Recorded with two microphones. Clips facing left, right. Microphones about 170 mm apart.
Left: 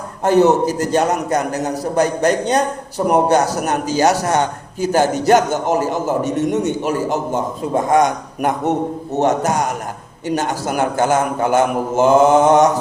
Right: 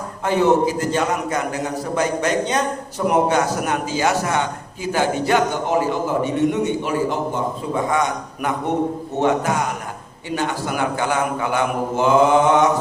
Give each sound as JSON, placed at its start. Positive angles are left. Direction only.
{"t": 0.3, "sound": "a man's voice", "side_deg": 40}